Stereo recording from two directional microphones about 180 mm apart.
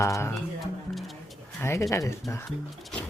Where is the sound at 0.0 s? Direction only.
15° left (ahead or behind).